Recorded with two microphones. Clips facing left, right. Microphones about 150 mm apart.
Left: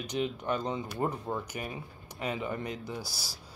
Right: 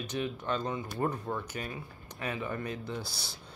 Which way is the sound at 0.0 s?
15° left (ahead or behind).